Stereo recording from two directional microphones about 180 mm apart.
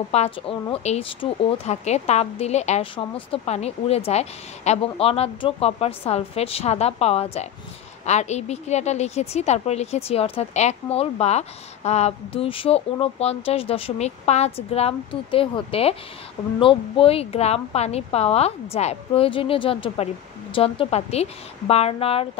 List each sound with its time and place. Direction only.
0.1 s a woman's voice: 35° left (ahead or behind)